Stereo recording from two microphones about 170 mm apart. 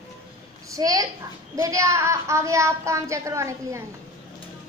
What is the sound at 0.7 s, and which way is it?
A woman's voice, 20° right (ahead or behind).